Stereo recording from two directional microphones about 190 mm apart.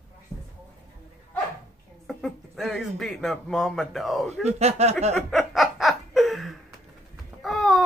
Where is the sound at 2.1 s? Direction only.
Centre (ahead or behind).